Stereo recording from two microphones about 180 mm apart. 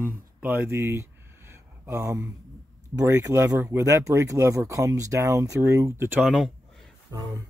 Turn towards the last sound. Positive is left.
turn(degrees=-20)  # may be behind; listen again after turning